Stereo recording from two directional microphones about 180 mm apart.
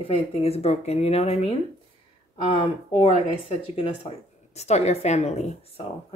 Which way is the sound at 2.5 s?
30° left (ahead or behind).